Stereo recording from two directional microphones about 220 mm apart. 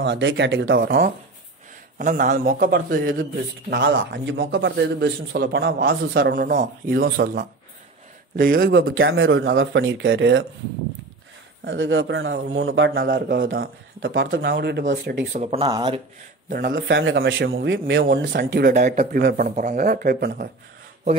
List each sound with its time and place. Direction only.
0.0 s a man's voice: 55° right (ahead or behind); by 3.3 s 40° right (ahead or behind)
3.9 s a man's voice: 60° right (ahead or behind)
11.6 s speech: 60° right (ahead or behind); by 13.5 s 40° right (ahead or behind)
14.1 s a man's voice: 60° right (ahead or behind)
15.3 s speech: 30° right (ahead or behind)
16.4 s a man's voice: 40° right (ahead or behind)